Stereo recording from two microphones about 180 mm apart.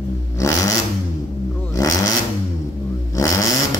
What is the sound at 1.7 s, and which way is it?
Vehicle, 20° left (ahead or behind).